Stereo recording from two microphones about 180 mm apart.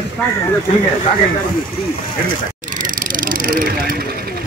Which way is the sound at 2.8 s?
50° right (ahead or behind).